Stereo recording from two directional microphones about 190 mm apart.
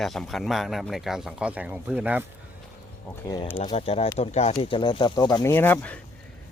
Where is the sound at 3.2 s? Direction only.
20° left (ahead or behind).